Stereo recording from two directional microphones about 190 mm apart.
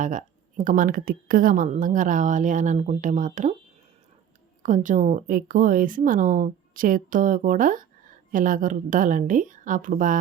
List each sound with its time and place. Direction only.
0.0 s speech: 40° right (ahead or behind)
4.6 s speech: 40° right (ahead or behind)